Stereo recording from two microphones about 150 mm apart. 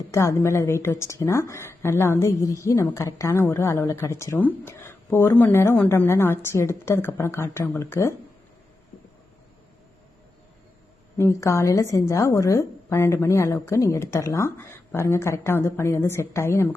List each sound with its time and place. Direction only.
0.1 s a woman's voice: 20° left (ahead or behind)
11.2 s a woman's voice: 20° left (ahead or behind)